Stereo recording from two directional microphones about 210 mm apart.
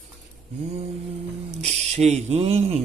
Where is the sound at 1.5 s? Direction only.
30° right (ahead or behind).